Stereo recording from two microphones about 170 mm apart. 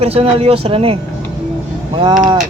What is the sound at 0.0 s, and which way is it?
Speech, 35° right (ahead or behind).